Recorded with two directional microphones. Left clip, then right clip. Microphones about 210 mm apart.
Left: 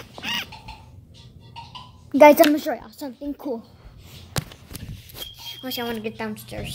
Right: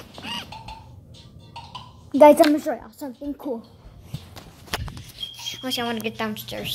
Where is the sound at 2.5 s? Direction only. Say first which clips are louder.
Even; 15° left (ahead or behind).